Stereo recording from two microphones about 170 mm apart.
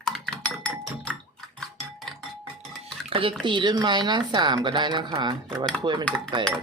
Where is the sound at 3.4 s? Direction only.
30° right (ahead or behind).